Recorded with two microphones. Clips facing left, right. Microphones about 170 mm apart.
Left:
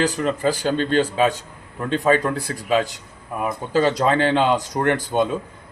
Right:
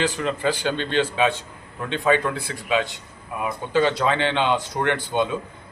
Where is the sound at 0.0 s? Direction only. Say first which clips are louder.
Left 3 dB; 40° left (ahead or behind).